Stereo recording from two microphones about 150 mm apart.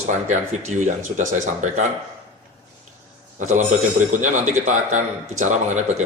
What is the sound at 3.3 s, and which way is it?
Speech, 55° right (ahead or behind).